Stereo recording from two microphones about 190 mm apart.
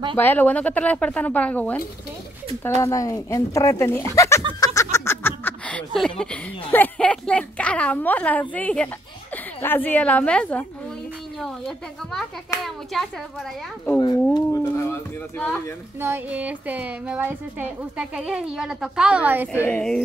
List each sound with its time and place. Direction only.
0.1 s speech: 10° left (ahead or behind)
4.6 s a sound: 20° left (ahead or behind)
4.9 s a woman's voice: 15° left (ahead or behind)
13.8 s speech: 15° left (ahead or behind)
14.3 s a sound: 15° left (ahead or behind)
16.0 s a woman's voice: 10° right (ahead or behind)
19.6 s a woman's voice: 5° left (ahead or behind)